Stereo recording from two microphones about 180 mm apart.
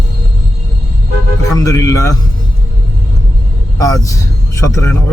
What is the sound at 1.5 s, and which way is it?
Speech, 20° left (ahead or behind).